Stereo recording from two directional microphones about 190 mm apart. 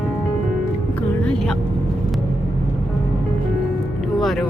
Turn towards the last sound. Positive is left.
turn(degrees=0)  # may be behind; listen again after turning